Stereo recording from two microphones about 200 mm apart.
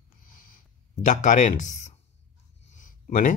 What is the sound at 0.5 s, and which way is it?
Speech, 40° left (ahead or behind).